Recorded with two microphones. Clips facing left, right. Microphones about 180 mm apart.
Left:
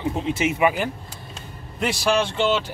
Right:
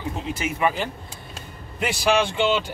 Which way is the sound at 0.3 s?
25° left (ahead or behind).